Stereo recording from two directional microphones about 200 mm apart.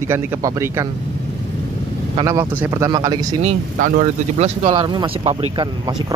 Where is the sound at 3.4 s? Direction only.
35° right (ahead or behind).